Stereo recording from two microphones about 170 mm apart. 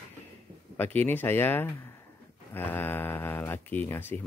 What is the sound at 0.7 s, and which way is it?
Speech, 10° left (ahead or behind).